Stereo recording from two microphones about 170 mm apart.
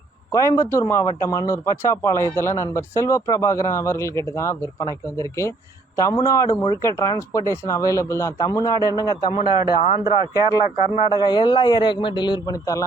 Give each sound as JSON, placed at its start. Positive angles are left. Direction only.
{"t": 0.3, "sound": "a man's voice", "side_deg": 20}
{"t": 9.6, "sound": "speech", "side_deg": -20}
{"t": 11.1, "sound": "speech", "side_deg": 25}